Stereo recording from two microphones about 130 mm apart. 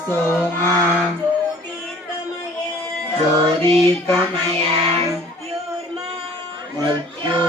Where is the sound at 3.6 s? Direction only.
20° left (ahead or behind).